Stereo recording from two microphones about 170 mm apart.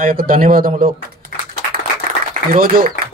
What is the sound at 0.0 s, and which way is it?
Speech, 55° right (ahead or behind).